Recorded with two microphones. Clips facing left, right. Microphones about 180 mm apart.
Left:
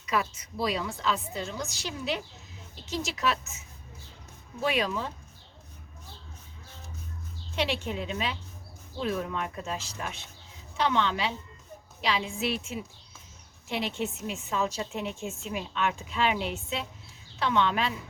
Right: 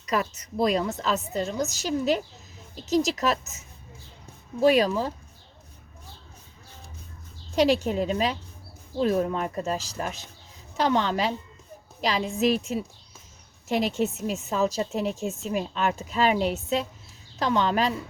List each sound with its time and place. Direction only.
0.0 s a woman's voice: 40° right (ahead or behind)
4.6 s a woman's voice: 40° right (ahead or behind)
7.5 s a woman's voice: 40° right (ahead or behind)